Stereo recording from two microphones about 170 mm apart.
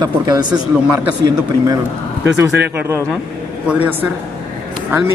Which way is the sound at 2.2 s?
85° right.